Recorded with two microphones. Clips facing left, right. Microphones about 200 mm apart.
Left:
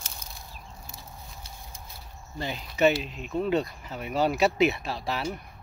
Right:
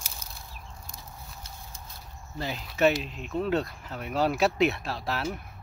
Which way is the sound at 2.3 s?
Centre (ahead or behind).